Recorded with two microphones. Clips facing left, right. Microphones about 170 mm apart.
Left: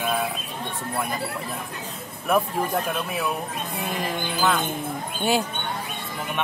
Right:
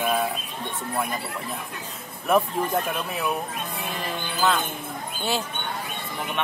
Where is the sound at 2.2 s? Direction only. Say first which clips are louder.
Right 1 dB; centre (ahead or behind).